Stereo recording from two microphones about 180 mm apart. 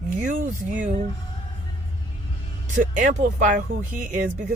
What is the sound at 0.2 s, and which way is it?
Speech, 45° right (ahead or behind).